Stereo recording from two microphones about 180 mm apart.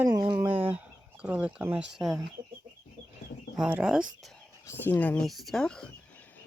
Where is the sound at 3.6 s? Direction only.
5° right (ahead or behind).